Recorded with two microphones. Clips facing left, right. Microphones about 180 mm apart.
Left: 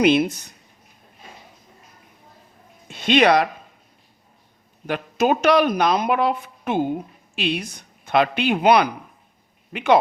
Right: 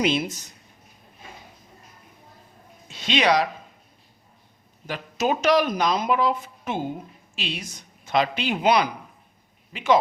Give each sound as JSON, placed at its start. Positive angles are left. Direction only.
{"t": 0.0, "sound": "speech", "side_deg": 60}
{"t": 2.9, "sound": "speech", "side_deg": 55}
{"t": 4.9, "sound": "speech", "side_deg": 55}